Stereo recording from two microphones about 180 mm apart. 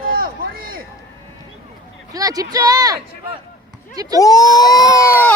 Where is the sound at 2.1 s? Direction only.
20° right (ahead or behind).